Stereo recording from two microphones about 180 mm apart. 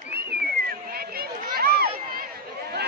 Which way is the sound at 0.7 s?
55° right (ahead or behind).